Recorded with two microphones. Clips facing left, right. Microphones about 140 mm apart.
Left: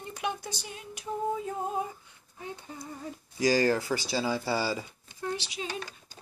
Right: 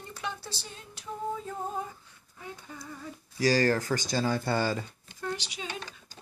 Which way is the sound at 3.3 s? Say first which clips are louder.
Even; 15° left (ahead or behind).